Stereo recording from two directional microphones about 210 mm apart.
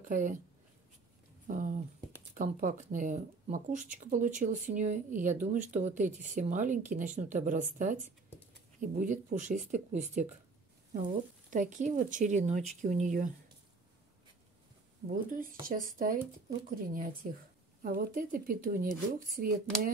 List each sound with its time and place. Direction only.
0.0 s speech: 40° right (ahead or behind)
1.5 s speech: 40° right (ahead or behind)
11.5 s speech: 35° right (ahead or behind)
15.0 s speech: 40° right (ahead or behind)